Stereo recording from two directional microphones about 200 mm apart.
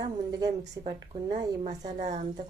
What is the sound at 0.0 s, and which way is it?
Speech, 20° right (ahead or behind).